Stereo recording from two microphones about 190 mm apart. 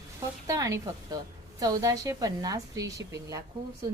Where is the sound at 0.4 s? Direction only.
15° right (ahead or behind).